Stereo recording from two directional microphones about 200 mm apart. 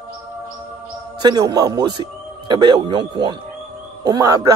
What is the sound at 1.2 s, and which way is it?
A man's voice, 20° right (ahead or behind).